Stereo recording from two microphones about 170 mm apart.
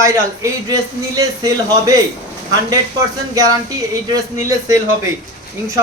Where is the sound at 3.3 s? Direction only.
20° right (ahead or behind).